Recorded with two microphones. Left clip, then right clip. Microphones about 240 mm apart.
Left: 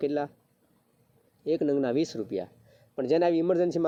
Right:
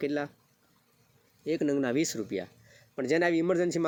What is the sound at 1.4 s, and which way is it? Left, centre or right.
Speech, right.